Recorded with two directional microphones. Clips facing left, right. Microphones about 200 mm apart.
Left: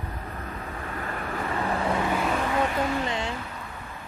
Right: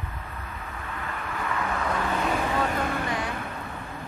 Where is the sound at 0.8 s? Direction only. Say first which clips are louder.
Left 2 dB; 40° left (ahead or behind).